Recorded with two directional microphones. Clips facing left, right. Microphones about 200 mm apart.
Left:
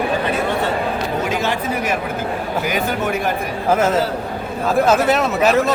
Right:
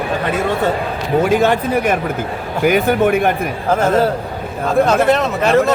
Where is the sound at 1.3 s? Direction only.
55° right (ahead or behind).